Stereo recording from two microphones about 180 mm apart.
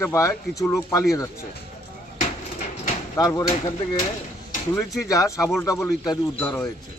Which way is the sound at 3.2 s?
20° left (ahead or behind).